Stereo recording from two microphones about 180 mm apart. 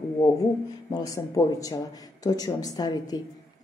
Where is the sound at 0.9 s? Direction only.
20° left (ahead or behind).